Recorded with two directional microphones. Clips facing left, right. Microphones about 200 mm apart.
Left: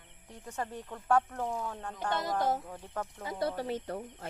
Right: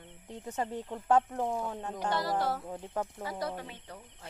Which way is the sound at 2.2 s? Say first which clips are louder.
Left 2 dB; 20° left (ahead or behind).